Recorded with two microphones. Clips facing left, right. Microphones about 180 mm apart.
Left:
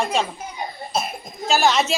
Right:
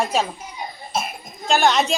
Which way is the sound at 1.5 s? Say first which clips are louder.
Right 1 dB; centre (ahead or behind).